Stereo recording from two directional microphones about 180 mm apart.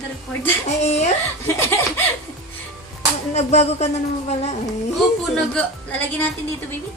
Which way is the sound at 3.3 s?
40° left (ahead or behind).